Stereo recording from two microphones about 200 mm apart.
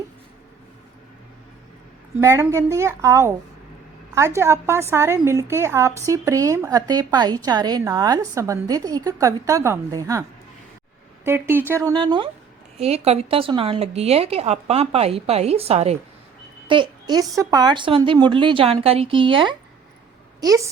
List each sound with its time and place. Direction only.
2.2 s a woman's voice: 15° right (ahead or behind)
11.3 s a woman's voice: 10° right (ahead or behind)